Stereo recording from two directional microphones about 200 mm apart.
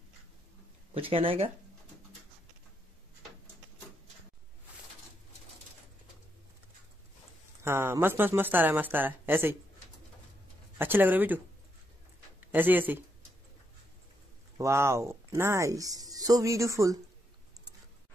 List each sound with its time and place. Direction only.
0.9 s speech: 25° right (ahead or behind)
7.6 s speech: 10° right (ahead or behind)
10.8 s speech: 10° right (ahead or behind)
14.6 s speech: 15° right (ahead or behind)